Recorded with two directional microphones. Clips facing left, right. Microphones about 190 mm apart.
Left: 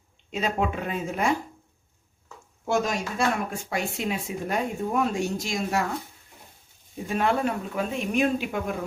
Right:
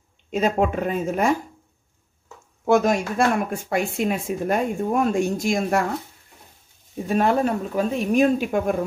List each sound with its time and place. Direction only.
0.3 s speech: 45° right (ahead or behind)
2.6 s speech: 55° right (ahead or behind)
7.1 s speech: 40° right (ahead or behind)